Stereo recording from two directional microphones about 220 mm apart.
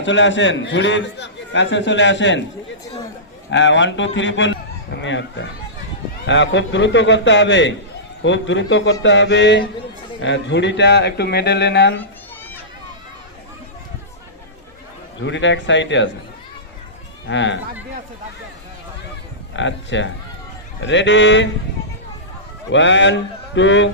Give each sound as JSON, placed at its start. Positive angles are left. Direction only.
{"t": 0.0, "sound": "a man's voice", "side_deg": 55}
{"t": 3.5, "sound": "a man's voice", "side_deg": 55}
{"t": 15.2, "sound": "a man's voice", "side_deg": 55}
{"t": 17.2, "sound": "a man's voice", "side_deg": 55}
{"t": 19.5, "sound": "a man's voice", "side_deg": 55}
{"t": 22.7, "sound": "a man's voice", "side_deg": 55}